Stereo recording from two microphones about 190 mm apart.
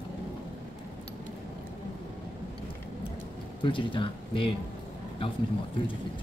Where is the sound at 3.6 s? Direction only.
25° left (ahead or behind).